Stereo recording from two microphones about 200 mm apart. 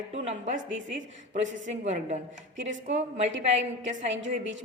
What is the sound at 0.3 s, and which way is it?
A woman's voice, 35° right (ahead or behind).